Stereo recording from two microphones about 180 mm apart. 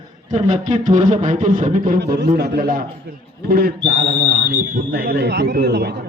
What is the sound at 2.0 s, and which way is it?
A man's voice, 65° right (ahead or behind).